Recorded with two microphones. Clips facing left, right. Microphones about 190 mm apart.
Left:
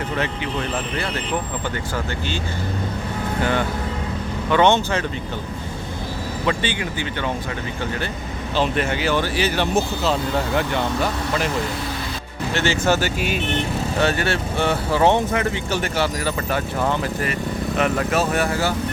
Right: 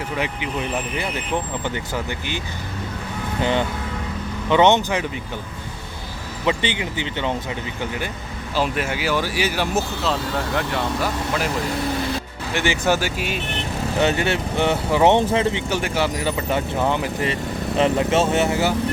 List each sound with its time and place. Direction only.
0.2 s speech: 15° right (ahead or behind)
3.4 s speech: 20° right (ahead or behind)
6.4 s speech: 20° right (ahead or behind); by 11.4 s centre (ahead or behind)
12.5 s speech: 15° right (ahead or behind)
15.7 s speech: 15° right (ahead or behind)